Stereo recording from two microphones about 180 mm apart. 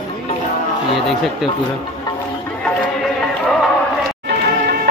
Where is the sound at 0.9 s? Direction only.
Centre (ahead or behind).